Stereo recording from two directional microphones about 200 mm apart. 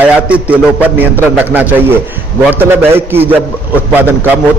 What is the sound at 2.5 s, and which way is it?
A man's voice, 10° right (ahead or behind).